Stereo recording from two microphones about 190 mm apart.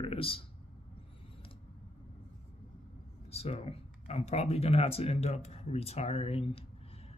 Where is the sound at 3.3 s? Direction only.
35° left (ahead or behind).